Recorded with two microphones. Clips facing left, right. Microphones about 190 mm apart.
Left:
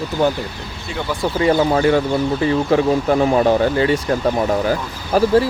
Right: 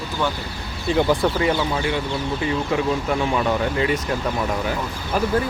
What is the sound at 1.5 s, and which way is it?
Speech, 45° left (ahead or behind).